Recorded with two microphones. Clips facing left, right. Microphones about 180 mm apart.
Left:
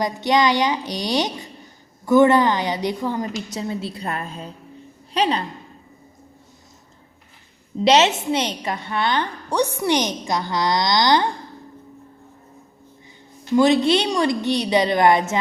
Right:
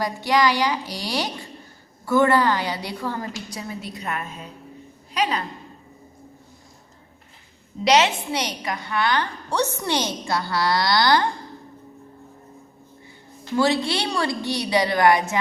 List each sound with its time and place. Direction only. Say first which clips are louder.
0.0 s a woman's voice: left 2 dB; 20° left (ahead or behind)
7.9 s a woman's voice: left 3 dB; 25° left (ahead or behind)
13.6 s a woman's voice: left 5 dB; 20° left (ahead or behind)